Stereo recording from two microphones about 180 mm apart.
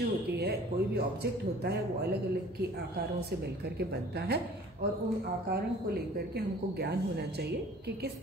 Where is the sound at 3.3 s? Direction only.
65° right (ahead or behind).